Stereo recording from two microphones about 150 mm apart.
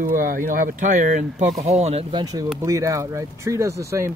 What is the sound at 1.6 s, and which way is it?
Speech, 45° right (ahead or behind).